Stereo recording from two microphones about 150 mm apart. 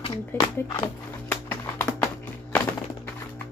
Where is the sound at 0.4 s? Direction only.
30° left (ahead or behind).